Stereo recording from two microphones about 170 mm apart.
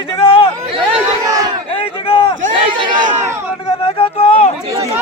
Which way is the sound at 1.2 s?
20° right (ahead or behind).